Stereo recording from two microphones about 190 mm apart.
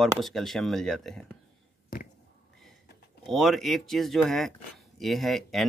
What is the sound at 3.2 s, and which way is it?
Speech, centre (ahead or behind).